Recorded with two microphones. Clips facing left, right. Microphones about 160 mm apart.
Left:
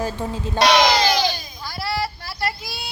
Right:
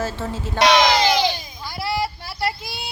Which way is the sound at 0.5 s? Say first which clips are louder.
Even; 20° right (ahead or behind).